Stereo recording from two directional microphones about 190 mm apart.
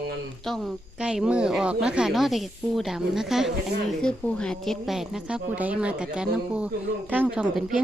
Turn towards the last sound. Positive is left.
turn(degrees=-5)  # may be behind; listen again after turning